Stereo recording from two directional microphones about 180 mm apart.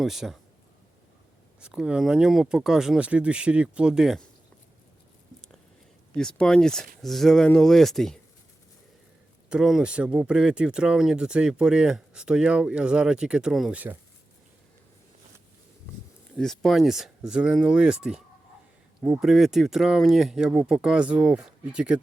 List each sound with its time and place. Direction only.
0.0 s speech: centre (ahead or behind)
1.6 s speech: 5° right (ahead or behind)
6.1 s speech: 5° left (ahead or behind)
9.5 s speech: 5° right (ahead or behind)
16.4 s speech: centre (ahead or behind)